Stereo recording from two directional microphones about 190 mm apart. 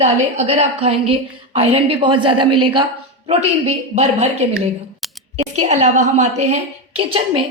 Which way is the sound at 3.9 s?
35° right (ahead or behind).